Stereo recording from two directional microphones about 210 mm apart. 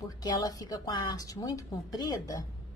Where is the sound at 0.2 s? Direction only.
20° left (ahead or behind).